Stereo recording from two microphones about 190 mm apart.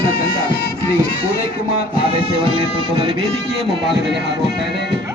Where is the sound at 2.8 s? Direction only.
20° right (ahead or behind).